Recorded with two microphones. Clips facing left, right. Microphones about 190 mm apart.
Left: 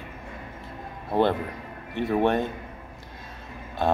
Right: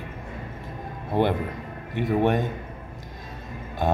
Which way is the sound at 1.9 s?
15° right (ahead or behind).